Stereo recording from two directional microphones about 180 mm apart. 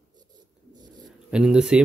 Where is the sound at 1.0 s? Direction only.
5° right (ahead or behind).